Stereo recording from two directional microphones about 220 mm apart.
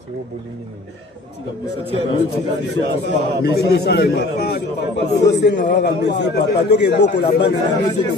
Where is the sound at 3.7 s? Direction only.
50° left (ahead or behind).